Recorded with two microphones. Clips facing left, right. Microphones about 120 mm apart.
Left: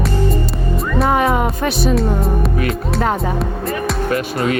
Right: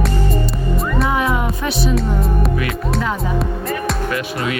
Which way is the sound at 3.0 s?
50° left (ahead or behind).